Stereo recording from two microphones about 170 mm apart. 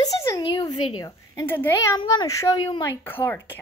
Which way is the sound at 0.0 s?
20° left (ahead or behind).